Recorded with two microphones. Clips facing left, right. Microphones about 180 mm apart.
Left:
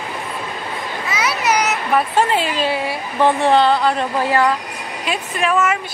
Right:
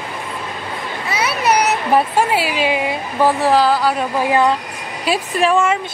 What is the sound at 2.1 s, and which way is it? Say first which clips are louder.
Speech: even; 10° right (ahead or behind).